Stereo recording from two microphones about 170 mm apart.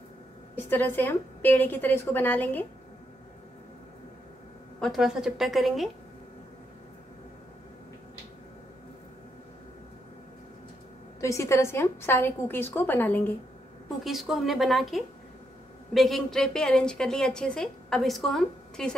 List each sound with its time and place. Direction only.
0.6 s a woman's voice: 10° left (ahead or behind)
4.7 s a woman's voice: centre (ahead or behind)
11.1 s a woman's voice: 15° left (ahead or behind)
14.0 s a woman's voice: centre (ahead or behind)